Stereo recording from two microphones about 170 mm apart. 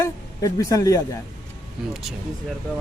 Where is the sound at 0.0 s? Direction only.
20° left (ahead or behind).